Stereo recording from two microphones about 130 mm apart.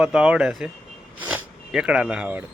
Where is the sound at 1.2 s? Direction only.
10° right (ahead or behind).